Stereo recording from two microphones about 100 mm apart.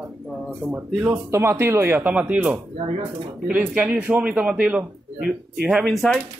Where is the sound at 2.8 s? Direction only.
65° right (ahead or behind).